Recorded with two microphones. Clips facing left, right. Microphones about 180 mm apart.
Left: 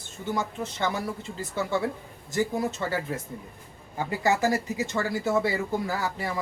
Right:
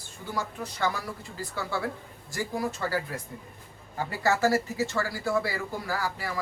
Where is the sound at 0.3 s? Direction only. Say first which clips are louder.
Left 1 dB; 25° left (ahead or behind).